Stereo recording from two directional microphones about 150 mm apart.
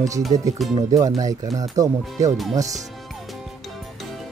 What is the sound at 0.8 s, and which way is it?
Speech, 25° right (ahead or behind).